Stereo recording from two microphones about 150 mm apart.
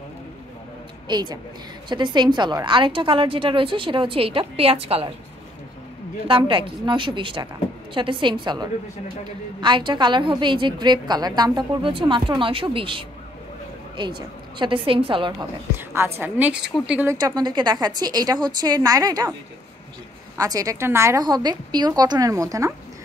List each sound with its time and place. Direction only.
1.0 s a woman's voice: 30° right (ahead or behind)
6.2 s a woman's voice: 35° right (ahead or behind)
15.7 s a woman's voice: 15° right (ahead or behind)
17.1 s a woman's voice: 30° right (ahead or behind)
20.3 s a woman's voice: 25° right (ahead or behind)